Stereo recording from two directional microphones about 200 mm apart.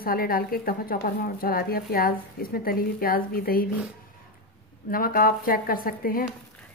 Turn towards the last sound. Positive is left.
turn(degrees=45)  # may be behind; listen again after turning